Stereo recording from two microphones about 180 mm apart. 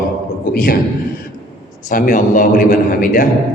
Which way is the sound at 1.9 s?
50° left (ahead or behind).